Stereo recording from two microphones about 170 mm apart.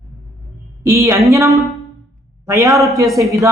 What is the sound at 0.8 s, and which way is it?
A woman's voice, 15° right (ahead or behind).